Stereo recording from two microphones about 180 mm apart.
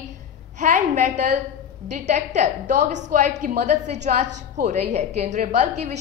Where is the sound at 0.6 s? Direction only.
45° right (ahead or behind).